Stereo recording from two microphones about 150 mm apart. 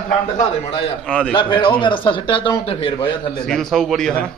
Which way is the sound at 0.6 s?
40° left (ahead or behind).